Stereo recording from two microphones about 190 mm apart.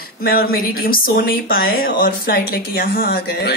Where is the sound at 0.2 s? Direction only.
50° left (ahead or behind).